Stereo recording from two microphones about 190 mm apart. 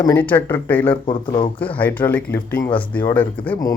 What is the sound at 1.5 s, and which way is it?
Speech, 10° left (ahead or behind).